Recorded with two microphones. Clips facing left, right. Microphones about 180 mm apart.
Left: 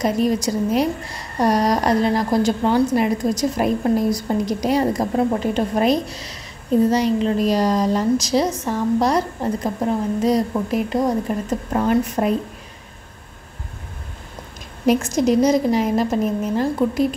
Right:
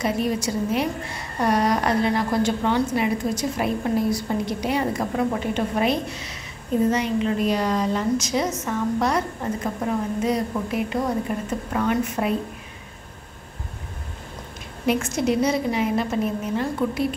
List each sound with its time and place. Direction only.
0.0 s a woman's voice: 40° left (ahead or behind)
14.9 s a woman's voice: 40° left (ahead or behind)